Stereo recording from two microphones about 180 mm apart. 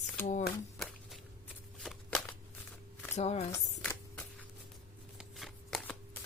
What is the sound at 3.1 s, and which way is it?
Speech, 35° left (ahead or behind).